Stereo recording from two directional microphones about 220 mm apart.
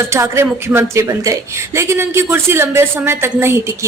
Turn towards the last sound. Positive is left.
turn(degrees=-10)  # may be behind; listen again after turning